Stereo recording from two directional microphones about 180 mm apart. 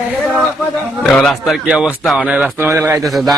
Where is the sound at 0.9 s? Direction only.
5° left (ahead or behind).